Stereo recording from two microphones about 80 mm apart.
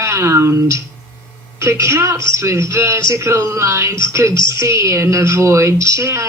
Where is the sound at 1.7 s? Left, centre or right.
Right.